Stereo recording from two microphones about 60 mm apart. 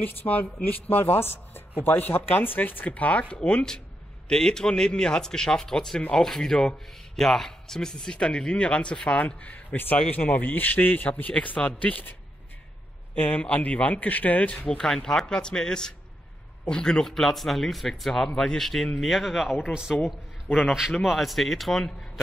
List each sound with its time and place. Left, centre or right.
0.0 s a man's voice: left
14.7 s speech: centre
18.9 s speech: centre
21.0 s speech: centre